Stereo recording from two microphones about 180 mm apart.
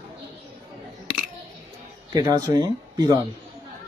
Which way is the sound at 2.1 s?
20° right (ahead or behind).